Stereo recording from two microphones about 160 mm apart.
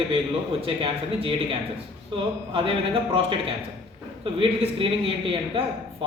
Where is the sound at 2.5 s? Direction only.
35° right (ahead or behind).